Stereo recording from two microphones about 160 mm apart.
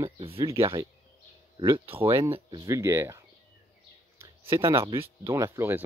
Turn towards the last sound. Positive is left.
turn(degrees=-15)  # may be behind; listen again after turning